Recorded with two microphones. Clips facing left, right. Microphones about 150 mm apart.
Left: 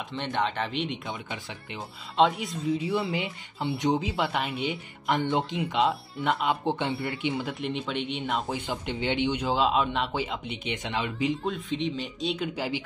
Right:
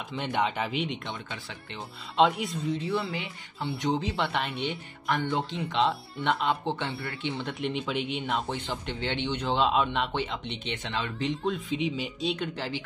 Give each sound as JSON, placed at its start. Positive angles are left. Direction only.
{"t": 0.3, "sound": "speech", "side_deg": -10}
{"t": 2.1, "sound": "speech", "side_deg": 0}
{"t": 2.9, "sound": "speech", "side_deg": 20}
{"t": 4.1, "sound": "speech", "side_deg": 5}
{"t": 5.0, "sound": "speech", "side_deg": 20}
{"t": 6.6, "sound": "speech", "side_deg": 15}
{"t": 12.5, "sound": "speech", "side_deg": 15}